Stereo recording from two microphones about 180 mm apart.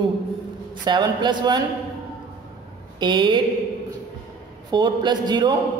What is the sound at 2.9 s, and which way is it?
Speech, 25° right (ahead or behind).